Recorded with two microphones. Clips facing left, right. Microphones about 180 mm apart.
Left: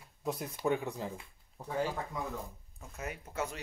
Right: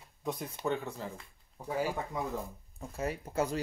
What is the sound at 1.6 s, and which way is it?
Speech, 10° right (ahead or behind).